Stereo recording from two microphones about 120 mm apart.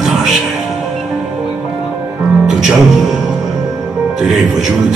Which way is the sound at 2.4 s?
5° right (ahead or behind).